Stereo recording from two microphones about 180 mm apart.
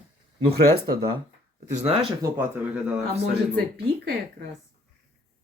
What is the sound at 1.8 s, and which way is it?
Speech, 35° right (ahead or behind).